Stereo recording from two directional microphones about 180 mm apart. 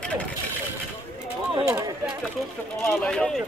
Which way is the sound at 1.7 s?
20° right (ahead or behind).